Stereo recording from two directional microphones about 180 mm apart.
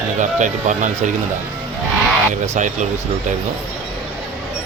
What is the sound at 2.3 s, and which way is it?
Speech, 45° right (ahead or behind).